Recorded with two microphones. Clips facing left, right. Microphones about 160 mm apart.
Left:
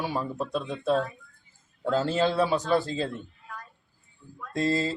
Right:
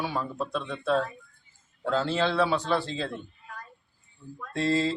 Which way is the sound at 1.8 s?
40° left (ahead or behind).